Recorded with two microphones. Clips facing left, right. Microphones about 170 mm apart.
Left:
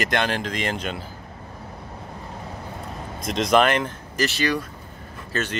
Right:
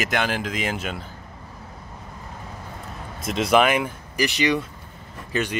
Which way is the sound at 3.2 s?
5° right (ahead or behind).